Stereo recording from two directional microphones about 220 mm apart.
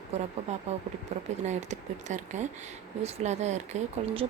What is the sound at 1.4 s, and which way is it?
A woman's voice, 30° right (ahead or behind).